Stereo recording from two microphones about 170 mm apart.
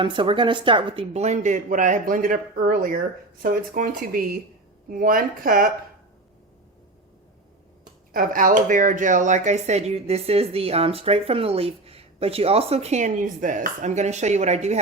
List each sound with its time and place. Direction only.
0.0 s speech: 30° right (ahead or behind); by 5.7 s 55° right (ahead or behind)
8.1 s speech: 55° right (ahead or behind)